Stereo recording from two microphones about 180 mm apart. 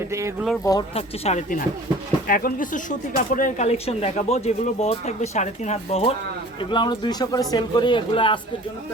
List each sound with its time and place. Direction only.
0.1 s speech: 15° right (ahead or behind)
0.6 s speech: 20° left (ahead or behind)
0.9 s speech: 35° left (ahead or behind)